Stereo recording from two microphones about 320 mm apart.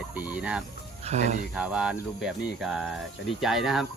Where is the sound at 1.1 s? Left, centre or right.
Centre.